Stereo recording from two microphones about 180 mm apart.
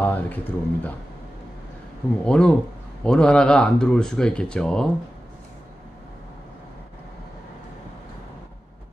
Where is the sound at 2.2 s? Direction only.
5° left (ahead or behind).